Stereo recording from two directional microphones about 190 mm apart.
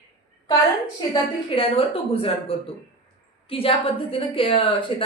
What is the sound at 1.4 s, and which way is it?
A woman's voice, 30° left (ahead or behind).